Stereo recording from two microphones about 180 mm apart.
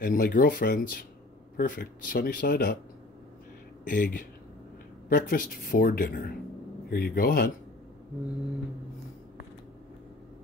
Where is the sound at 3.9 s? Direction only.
50° left (ahead or behind).